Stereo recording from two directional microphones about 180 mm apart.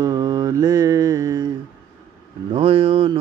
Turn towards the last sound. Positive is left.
turn(degrees=-30)  # may be behind; listen again after turning